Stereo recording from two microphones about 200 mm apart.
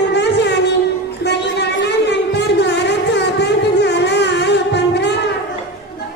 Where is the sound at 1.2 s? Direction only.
55° left (ahead or behind).